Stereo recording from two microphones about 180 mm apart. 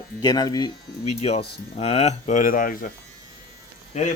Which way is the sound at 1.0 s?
35° left (ahead or behind).